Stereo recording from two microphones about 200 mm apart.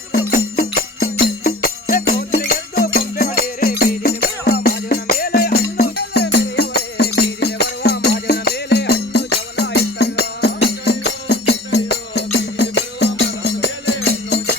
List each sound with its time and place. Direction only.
0.5 s music: 50° left (ahead or behind)